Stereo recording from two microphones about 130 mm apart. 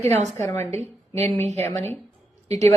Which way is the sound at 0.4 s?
15° left (ahead or behind).